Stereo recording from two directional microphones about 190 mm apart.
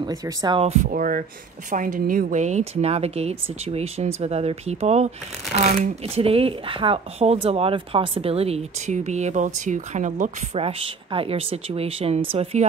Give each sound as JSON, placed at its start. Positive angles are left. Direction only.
{"t": 0.0, "sound": "speech", "side_deg": -20}
{"t": 10.6, "sound": "speech", "side_deg": -30}